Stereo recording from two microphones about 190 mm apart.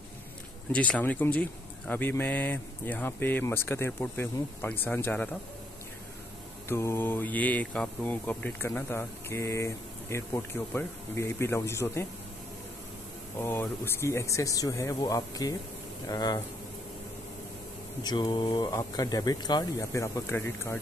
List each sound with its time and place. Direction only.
0.7 s insect: 5° left (ahead or behind)
6.7 s insect: 15° left (ahead or behind)
13.4 s insect: 10° left (ahead or behind)
15.0 s speech: 20° left (ahead or behind)
18.0 s speech: 20° left (ahead or behind)